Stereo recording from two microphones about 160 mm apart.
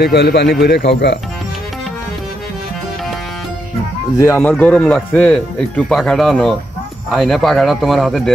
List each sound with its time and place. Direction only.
0.0 s speech: 90° left
4.4 s speech: 10° left (ahead or behind)